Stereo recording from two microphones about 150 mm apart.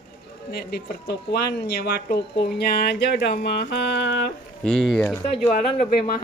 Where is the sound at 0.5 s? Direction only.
90° left.